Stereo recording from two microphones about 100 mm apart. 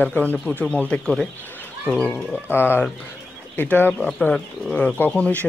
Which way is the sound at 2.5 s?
20° left (ahead or behind).